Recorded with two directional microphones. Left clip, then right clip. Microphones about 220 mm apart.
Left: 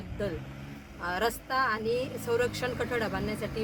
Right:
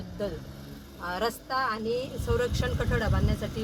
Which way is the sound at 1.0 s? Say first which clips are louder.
Even; 10° left (ahead or behind).